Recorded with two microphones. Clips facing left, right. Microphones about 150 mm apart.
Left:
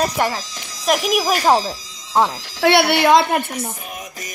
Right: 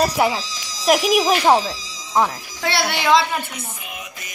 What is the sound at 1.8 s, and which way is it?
Speech, 60° left (ahead or behind).